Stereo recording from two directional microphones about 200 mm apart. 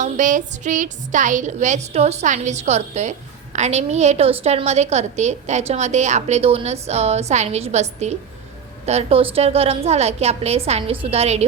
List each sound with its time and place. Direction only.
0.0 s a woman's voice: 40° right (ahead or behind)